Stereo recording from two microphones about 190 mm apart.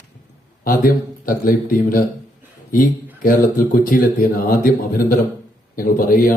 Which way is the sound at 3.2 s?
45° left (ahead or behind).